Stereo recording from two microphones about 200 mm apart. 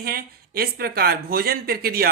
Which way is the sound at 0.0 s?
50° right (ahead or behind).